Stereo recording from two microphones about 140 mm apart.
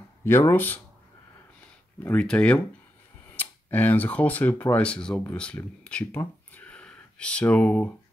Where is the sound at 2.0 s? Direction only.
10° left (ahead or behind).